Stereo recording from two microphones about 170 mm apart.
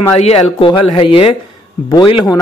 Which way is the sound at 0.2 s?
35° left (ahead or behind).